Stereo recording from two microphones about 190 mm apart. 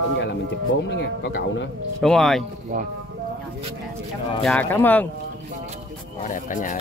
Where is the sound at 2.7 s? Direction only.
45° right (ahead or behind).